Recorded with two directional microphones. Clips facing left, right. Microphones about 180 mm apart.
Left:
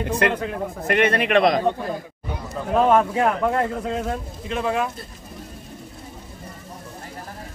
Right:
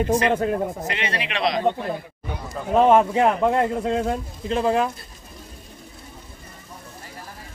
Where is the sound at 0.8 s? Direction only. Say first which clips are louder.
Left 8 dB; 55° left (ahead or behind).